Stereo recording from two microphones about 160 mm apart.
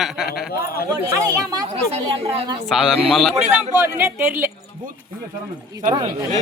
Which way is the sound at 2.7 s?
Centre (ahead or behind).